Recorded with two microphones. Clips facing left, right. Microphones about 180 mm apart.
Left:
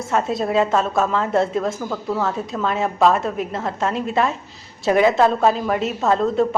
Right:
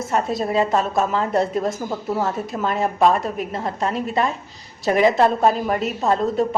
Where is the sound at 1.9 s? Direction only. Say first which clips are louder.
Even; 20° right (ahead or behind).